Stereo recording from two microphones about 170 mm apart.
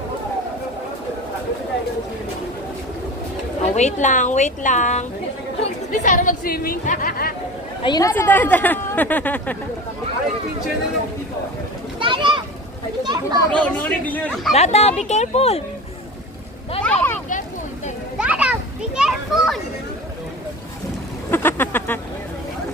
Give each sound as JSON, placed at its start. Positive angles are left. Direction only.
{"t": 3.7, "sound": "a woman's voice", "side_deg": 45}
{"t": 7.8, "sound": "a woman's voice", "side_deg": 25}
{"t": 8.1, "sound": "speech", "side_deg": 10}
{"t": 12.0, "sound": "a sound", "side_deg": -30}
{"t": 13.0, "sound": "a child's voice", "side_deg": -25}
{"t": 13.5, "sound": "speech", "side_deg": 10}
{"t": 14.5, "sound": "speech", "side_deg": 40}
{"t": 16.8, "sound": "vehicle", "side_deg": 10}
{"t": 18.1, "sound": "children playing", "side_deg": -5}
{"t": 21.3, "sound": "a sound", "side_deg": 15}